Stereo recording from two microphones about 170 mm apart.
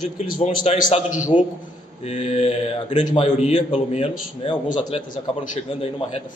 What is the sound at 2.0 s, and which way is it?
Speech, 40° left (ahead or behind).